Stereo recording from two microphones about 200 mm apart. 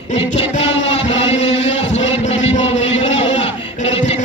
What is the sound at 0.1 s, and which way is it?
Music, 35° left (ahead or behind).